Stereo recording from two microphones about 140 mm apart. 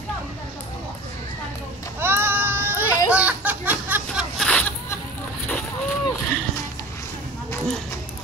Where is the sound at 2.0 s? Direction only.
15° right (ahead or behind).